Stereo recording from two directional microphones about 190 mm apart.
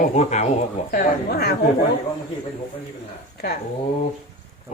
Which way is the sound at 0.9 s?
55° left (ahead or behind).